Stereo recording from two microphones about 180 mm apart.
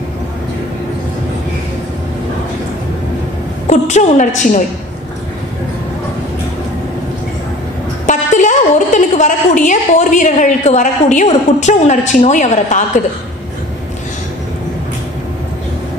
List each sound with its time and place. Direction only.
3.6 s a woman's voice: 40° left (ahead or behind)
8.1 s a woman's voice: 45° left (ahead or behind)